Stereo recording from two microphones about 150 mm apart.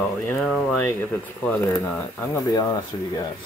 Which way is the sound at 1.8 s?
10° left (ahead or behind).